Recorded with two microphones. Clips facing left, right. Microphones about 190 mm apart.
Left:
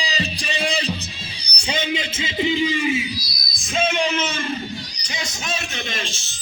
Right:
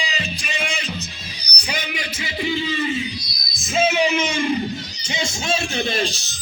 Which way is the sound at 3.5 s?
5° right (ahead or behind).